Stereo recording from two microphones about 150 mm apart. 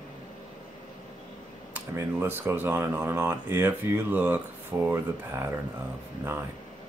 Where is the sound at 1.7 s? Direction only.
15° right (ahead or behind).